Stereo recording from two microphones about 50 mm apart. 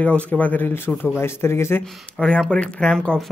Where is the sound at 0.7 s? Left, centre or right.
Left.